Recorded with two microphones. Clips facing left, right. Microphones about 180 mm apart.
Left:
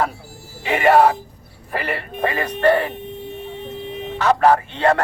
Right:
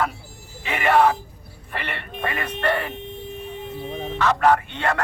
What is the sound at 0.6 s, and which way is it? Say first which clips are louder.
A man's voice: left 4 dB; 40° left (ahead or behind).